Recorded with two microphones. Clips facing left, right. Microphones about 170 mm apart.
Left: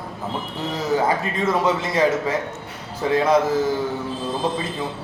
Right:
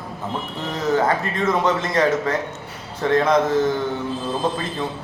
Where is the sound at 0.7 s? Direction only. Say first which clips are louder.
Right 1 dB; 10° left (ahead or behind).